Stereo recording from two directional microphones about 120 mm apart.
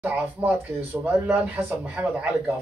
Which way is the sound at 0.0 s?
15° right (ahead or behind).